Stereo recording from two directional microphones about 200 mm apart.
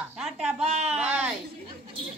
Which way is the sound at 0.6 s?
35° right (ahead or behind).